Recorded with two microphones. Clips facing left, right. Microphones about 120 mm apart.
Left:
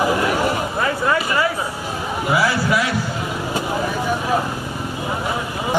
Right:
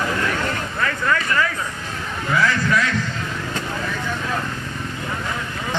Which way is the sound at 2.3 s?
10° left (ahead or behind).